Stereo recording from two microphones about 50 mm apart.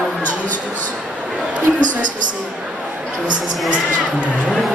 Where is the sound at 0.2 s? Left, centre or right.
Left.